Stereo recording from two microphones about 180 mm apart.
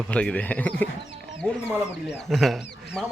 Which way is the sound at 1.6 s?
5° right (ahead or behind).